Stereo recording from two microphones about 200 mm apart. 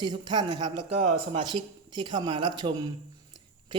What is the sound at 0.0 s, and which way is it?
A man's voice, 20° right (ahead or behind).